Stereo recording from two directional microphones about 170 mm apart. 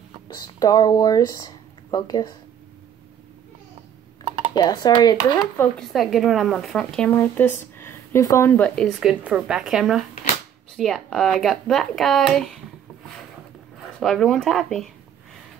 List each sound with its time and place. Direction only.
0.3 s speech: 20° left (ahead or behind)
4.6 s speech: 25° left (ahead or behind)
5.6 s speech: centre (ahead or behind)
13.9 s speech: 5° left (ahead or behind)